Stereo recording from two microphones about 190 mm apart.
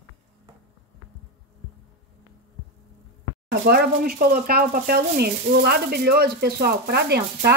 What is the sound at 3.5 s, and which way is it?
Speech, 55° right (ahead or behind).